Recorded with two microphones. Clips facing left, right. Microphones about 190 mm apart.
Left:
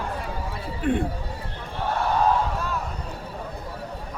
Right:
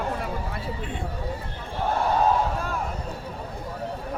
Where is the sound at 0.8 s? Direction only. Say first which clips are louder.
Left 10 dB; 60° left (ahead or behind).